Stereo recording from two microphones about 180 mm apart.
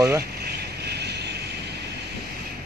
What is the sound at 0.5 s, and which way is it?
Vehicle, 65° right (ahead or behind).